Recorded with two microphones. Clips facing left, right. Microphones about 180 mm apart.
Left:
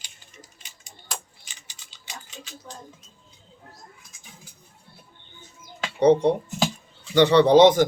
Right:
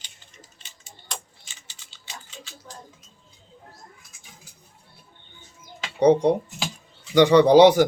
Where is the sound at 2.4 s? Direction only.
15° left (ahead or behind).